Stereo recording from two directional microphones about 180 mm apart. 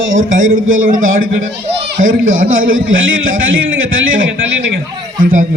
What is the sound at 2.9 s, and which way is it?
A man's voice, 90° right.